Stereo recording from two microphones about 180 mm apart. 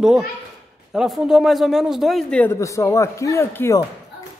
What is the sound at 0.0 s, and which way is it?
A man's voice, 5° right (ahead or behind).